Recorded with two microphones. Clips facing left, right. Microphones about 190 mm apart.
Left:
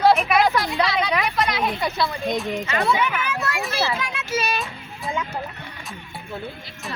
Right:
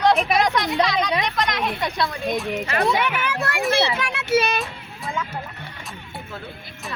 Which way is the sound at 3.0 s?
65° right (ahead or behind).